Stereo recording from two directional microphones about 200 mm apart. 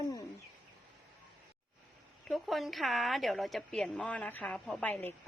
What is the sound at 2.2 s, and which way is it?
A woman's voice, centre (ahead or behind).